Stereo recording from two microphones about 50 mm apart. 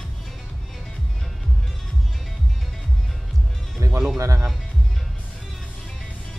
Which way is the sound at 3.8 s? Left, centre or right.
Right.